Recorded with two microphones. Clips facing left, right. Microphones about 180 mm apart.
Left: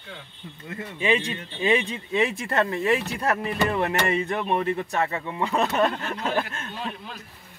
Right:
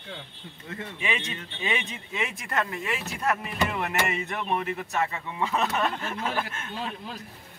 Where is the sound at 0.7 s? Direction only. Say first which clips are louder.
Left 8 dB; 35° left (ahead or behind).